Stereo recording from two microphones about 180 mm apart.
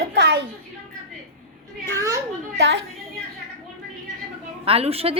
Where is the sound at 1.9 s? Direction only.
15° right (ahead or behind).